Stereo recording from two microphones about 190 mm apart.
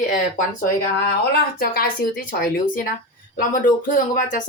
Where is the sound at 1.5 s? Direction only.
50° left (ahead or behind).